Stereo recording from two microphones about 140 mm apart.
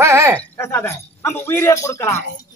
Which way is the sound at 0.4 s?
15° left (ahead or behind).